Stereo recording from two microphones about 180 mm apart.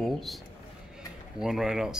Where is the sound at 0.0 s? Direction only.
Centre (ahead or behind).